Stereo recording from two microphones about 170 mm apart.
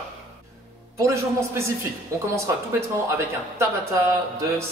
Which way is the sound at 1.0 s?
15° right (ahead or behind).